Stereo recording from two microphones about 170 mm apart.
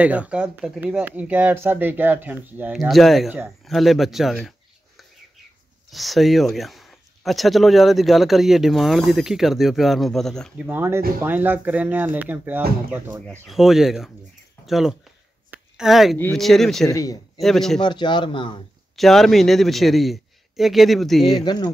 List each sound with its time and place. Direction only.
0.0 s speech: 10° right (ahead or behind)
10.7 s speech: 15° right (ahead or behind)
15.5 s a sound: centre (ahead or behind)
16.3 s speech: centre (ahead or behind)
16.8 s speech: 20° left (ahead or behind)
17.4 s speech: centre (ahead or behind)
17.7 s speech: 25° left (ahead or behind)
18.9 s speech: centre (ahead or behind)
21.5 s speech: 25° left (ahead or behind)